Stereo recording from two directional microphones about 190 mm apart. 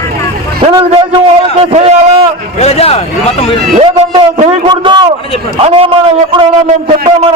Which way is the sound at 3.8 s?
30° right (ahead or behind).